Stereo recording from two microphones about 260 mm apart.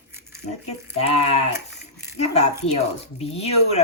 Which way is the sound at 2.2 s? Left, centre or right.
Left.